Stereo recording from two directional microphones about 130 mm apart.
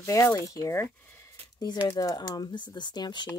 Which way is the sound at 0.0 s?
25° left (ahead or behind).